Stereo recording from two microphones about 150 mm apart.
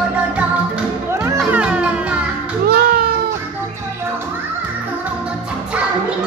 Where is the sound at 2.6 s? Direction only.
90° right.